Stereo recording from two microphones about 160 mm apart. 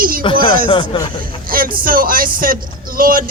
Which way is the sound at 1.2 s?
60° right (ahead or behind).